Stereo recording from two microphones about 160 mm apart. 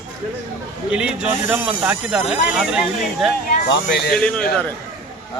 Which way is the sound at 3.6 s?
90° left.